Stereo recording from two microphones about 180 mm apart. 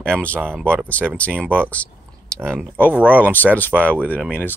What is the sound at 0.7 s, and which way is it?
Speech, 5° left (ahead or behind).